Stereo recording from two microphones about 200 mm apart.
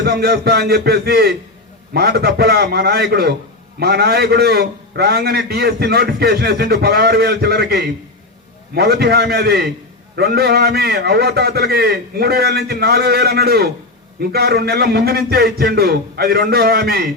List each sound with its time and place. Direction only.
0.0 s a man's voice: 55° right (ahead or behind)